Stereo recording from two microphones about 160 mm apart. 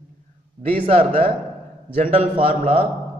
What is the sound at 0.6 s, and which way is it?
Speech, 35° right (ahead or behind).